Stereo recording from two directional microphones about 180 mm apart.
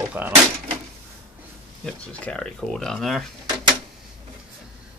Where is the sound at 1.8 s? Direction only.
5° left (ahead or behind).